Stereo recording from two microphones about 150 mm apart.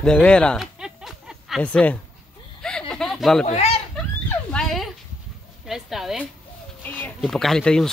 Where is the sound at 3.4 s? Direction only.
45° left (ahead or behind).